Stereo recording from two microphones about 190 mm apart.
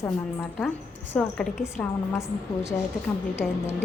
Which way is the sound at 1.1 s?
5° left (ahead or behind).